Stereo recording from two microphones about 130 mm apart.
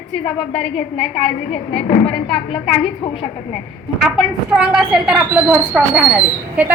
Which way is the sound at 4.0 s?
5° right (ahead or behind).